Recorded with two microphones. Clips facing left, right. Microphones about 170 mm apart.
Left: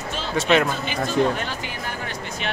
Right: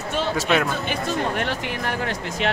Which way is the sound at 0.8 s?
70° right (ahead or behind).